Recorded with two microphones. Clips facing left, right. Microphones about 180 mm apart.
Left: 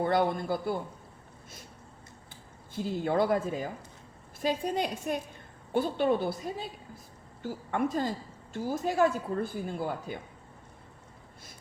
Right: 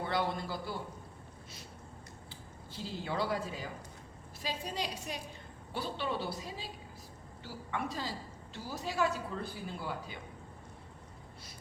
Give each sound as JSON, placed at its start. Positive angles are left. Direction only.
{"t": 0.0, "sound": "speech", "side_deg": 50}
{"t": 2.7, "sound": "speech", "side_deg": 50}